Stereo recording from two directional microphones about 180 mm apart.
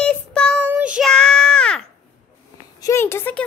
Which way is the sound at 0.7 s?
5° right (ahead or behind).